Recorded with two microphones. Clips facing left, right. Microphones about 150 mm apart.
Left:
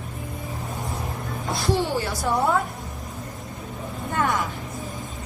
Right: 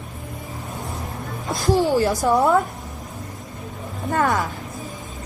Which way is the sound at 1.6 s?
40° right (ahead or behind).